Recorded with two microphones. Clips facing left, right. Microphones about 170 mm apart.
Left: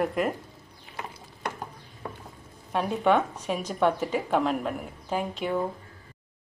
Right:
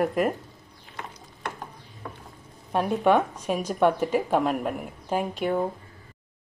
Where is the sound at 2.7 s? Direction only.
10° right (ahead or behind).